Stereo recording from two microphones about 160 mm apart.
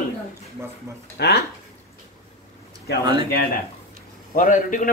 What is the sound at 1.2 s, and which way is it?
Speech, 90° left.